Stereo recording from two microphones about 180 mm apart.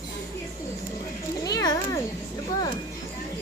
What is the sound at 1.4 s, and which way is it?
Speech, 20° left (ahead or behind).